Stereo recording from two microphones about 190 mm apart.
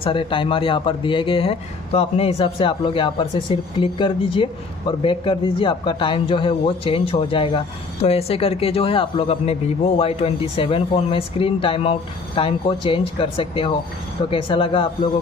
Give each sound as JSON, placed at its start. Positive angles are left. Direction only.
{"t": 0.0, "sound": "speech", "side_deg": 30}